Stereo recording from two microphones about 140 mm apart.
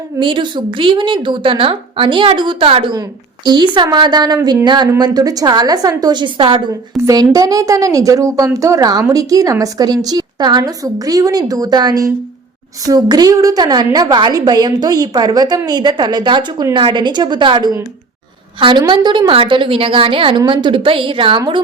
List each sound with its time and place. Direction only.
0.2 s a woman's voice: 35° right (ahead or behind)
7.0 s a woman's voice: 25° right (ahead or behind)